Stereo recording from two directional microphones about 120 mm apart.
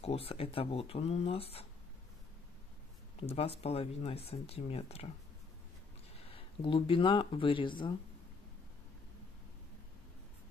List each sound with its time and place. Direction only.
0.0 s speech: 55° left (ahead or behind)
3.2 s speech: 55° left (ahead or behind)
6.1 s speech: 45° left (ahead or behind)